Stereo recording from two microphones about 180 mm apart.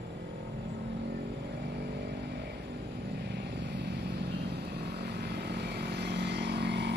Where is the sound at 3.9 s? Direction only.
70° right (ahead or behind).